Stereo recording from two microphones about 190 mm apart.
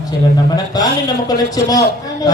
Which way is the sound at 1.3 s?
20° left (ahead or behind).